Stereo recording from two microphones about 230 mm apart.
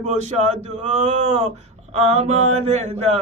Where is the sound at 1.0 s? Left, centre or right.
Right.